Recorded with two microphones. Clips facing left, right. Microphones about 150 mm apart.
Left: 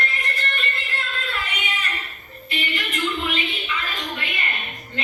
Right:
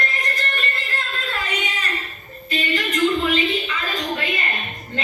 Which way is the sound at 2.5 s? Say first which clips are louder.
Right 5 dB; 40° right (ahead or behind).